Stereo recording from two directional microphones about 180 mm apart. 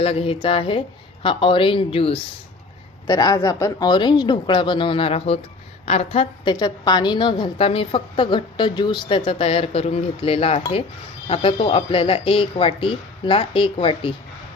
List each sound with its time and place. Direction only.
0.0 s a woman's voice: 35° left (ahead or behind)
3.1 s a woman's voice: 20° left (ahead or behind)